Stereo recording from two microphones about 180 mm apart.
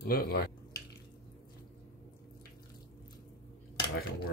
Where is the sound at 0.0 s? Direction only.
55° left (ahead or behind).